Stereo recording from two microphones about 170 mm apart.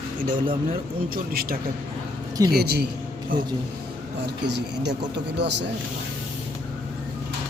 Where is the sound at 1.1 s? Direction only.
60° right (ahead or behind).